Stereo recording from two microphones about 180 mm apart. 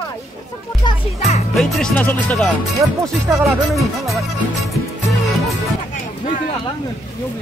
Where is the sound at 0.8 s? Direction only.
25° left (ahead or behind).